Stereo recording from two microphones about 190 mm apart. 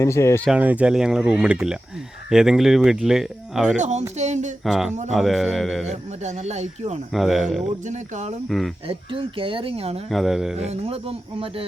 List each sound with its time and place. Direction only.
0.0 s speech: 15° left (ahead or behind)
0.4 s speech: 5° right (ahead or behind)
3.8 s speech: 40° right (ahead or behind)
4.6 s speech: centre (ahead or behind)
5.9 s speech: 35° right (ahead or behind)
7.1 s speech: centre (ahead or behind)
7.9 s speech: 40° right (ahead or behind)
8.4 s speech: centre (ahead or behind)
8.9 s speech: 25° right (ahead or behind)
10.1 s speech: centre (ahead or behind)
10.6 s speech: 35° right (ahead or behind)